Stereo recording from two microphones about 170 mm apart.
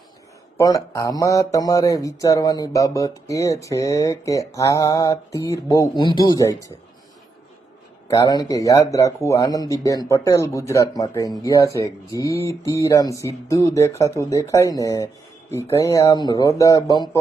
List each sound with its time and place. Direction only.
0.5 s mantra: 20° left (ahead or behind)
8.1 s mantra: 20° left (ahead or behind)